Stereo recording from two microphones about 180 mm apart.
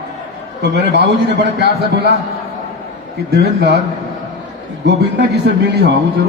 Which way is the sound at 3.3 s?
65° right (ahead or behind).